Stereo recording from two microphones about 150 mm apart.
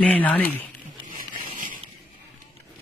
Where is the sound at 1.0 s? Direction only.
60° right (ahead or behind).